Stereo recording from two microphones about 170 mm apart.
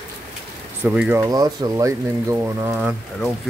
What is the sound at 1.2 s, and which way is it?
Speech, 20° right (ahead or behind).